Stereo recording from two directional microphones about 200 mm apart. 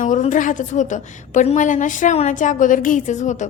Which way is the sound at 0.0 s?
40° left (ahead or behind).